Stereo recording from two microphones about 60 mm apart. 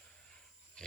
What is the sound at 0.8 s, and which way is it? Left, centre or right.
Pig, centre.